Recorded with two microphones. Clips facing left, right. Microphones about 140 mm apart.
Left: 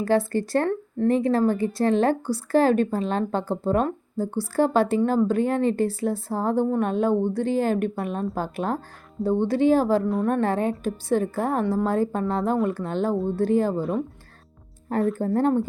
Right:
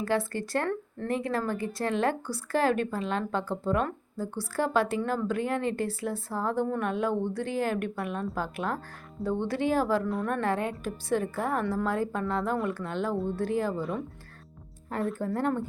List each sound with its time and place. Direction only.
0.0 s speech: 30° left (ahead or behind)
14.9 s speech: 40° left (ahead or behind)